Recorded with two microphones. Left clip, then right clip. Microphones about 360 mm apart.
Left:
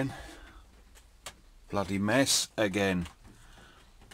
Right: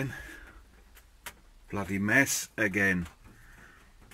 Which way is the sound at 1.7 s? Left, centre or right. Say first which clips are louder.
Right 1 dB; centre.